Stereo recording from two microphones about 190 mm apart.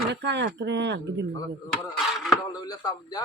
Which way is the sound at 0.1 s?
65° right (ahead or behind).